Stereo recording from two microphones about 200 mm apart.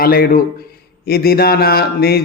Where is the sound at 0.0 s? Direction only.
45° left (ahead or behind).